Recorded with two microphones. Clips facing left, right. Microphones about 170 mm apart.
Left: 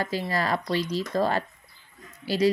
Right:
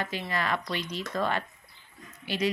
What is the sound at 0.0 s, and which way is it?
Speech, 35° left (ahead or behind).